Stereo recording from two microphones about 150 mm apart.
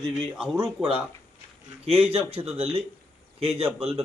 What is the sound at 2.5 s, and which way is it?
Speech, 40° right (ahead or behind).